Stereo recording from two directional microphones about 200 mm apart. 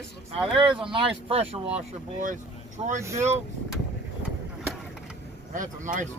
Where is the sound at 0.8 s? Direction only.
30° right (ahead or behind).